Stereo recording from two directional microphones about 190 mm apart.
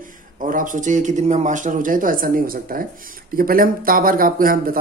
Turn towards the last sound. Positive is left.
turn(degrees=-50)  # may be behind; listen again after turning